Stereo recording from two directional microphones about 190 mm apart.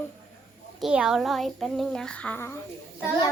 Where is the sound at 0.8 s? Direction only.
5° right (ahead or behind).